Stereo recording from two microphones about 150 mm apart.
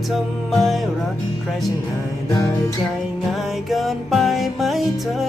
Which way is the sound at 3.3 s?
Centre (ahead or behind).